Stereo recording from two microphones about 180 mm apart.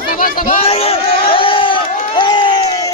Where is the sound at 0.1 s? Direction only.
50° left (ahead or behind).